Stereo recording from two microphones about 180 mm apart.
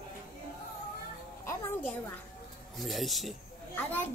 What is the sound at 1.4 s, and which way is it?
Music, 15° left (ahead or behind).